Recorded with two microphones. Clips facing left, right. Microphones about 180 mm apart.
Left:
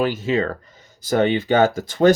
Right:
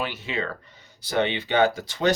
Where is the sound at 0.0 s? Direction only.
45° left (ahead or behind).